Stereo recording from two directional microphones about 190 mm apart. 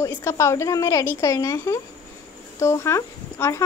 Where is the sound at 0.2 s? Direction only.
15° left (ahead or behind).